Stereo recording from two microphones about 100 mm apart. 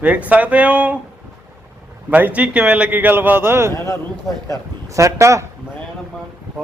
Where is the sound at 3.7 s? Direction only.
30° left (ahead or behind).